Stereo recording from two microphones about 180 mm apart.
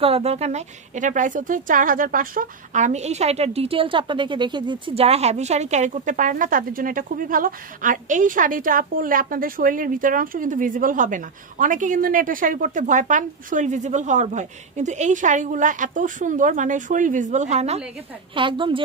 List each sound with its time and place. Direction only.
0.0 s a woman's voice: 35° right (ahead or behind)